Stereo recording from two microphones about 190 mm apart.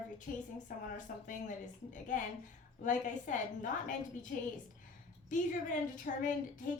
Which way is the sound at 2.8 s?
40° left (ahead or behind).